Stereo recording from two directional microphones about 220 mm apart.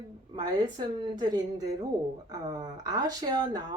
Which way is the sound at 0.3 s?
20° right (ahead or behind).